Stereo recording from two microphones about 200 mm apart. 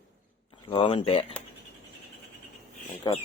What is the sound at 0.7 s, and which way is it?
Speech, 25° left (ahead or behind).